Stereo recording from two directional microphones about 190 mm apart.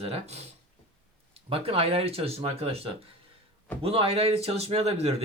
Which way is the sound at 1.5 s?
30° right (ahead or behind).